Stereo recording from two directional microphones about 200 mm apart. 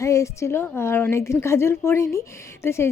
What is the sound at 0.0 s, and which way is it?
Speech, 15° left (ahead or behind).